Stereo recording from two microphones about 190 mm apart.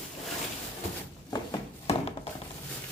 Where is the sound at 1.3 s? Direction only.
30° left (ahead or behind).